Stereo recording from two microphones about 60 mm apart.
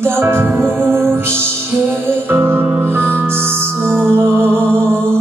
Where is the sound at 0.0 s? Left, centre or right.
Right.